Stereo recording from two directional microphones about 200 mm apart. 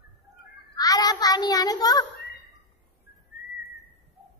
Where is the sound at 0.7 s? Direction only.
20° left (ahead or behind).